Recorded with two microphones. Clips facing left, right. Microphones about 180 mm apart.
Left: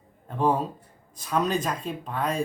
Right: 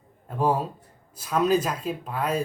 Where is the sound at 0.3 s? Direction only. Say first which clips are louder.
Even; 5° right (ahead or behind).